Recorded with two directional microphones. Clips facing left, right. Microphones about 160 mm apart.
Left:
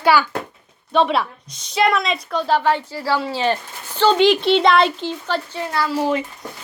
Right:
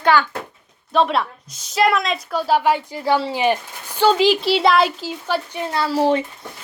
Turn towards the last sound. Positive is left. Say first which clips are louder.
# right 2 dB
turn(degrees=-35)  # may be behind; listen again after turning